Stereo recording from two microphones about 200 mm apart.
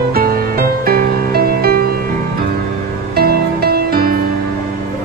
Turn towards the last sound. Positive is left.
turn(degrees=-50)  # may be behind; listen again after turning